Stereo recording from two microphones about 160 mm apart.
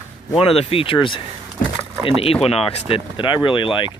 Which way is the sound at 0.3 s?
35° left (ahead or behind).